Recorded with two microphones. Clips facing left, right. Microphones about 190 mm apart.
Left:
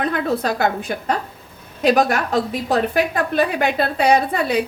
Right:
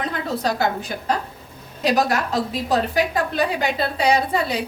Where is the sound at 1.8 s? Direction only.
55° left (ahead or behind).